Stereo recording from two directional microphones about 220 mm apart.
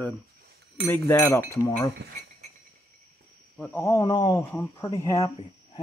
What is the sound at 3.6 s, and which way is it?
Speech, 10° left (ahead or behind).